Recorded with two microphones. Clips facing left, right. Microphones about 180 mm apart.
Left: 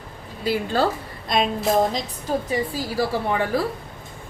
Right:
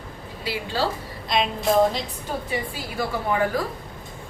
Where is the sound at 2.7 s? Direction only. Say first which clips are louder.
Left 4 dB; 30° left (ahead or behind).